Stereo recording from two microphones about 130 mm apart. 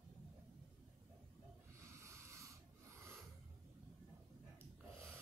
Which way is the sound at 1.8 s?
20° right (ahead or behind).